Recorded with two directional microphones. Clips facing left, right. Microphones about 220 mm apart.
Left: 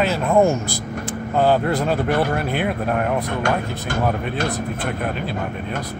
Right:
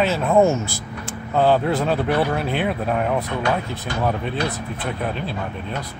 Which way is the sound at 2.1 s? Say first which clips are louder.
Even; 45° left (ahead or behind).